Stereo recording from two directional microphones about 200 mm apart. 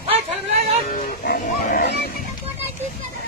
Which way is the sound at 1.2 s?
45° left (ahead or behind).